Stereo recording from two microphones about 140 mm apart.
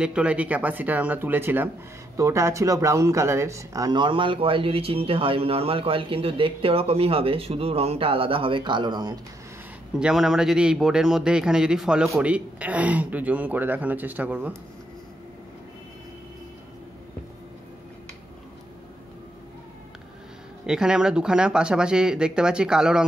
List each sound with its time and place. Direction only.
0.0 s a man's voice: 10° right (ahead or behind); by 9.2 s 30° right (ahead or behind)
9.9 s a man's voice: 5° right (ahead or behind)
20.6 s speech: 5° right (ahead or behind)